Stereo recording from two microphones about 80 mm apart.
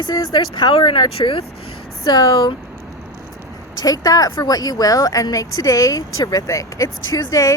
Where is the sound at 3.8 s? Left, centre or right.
Left.